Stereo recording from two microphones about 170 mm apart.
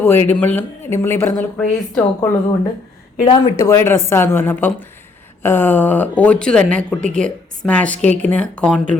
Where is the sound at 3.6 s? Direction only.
15° left (ahead or behind).